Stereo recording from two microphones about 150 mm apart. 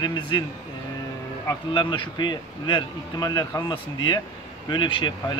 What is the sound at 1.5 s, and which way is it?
Speech, 35° left (ahead or behind).